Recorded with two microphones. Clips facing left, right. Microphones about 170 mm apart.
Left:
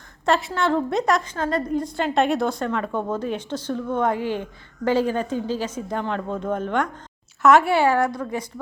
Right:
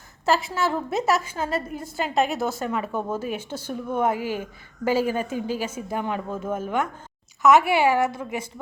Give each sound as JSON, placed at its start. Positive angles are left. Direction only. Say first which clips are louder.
{"t": 0.3, "sound": "a woman's voice", "louder": "left 2 dB", "side_deg": 0}
{"t": 7.7, "sound": "a woman's voice", "louder": "left 1 dB", "side_deg": -15}